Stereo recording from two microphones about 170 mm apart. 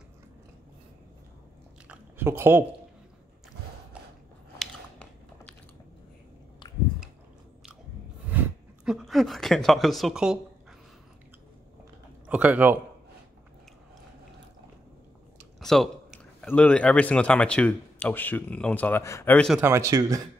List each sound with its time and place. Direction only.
1.9 s chewing: 15° right (ahead or behind)
4.6 s biting: 5° left (ahead or behind)
8.3 s a sound: 5° right (ahead or behind)
12.3 s speech: 10° right (ahead or behind)
15.6 s a sound: centre (ahead or behind)
16.4 s speech: 10° left (ahead or behind)
19.6 s speech: 15° right (ahead or behind)